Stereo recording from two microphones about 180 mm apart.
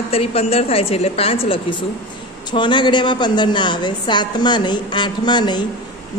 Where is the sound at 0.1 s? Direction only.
35° left (ahead or behind).